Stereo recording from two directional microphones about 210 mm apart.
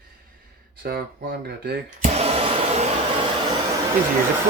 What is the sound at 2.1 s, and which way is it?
Vacuum cleaner, 30° right (ahead or behind).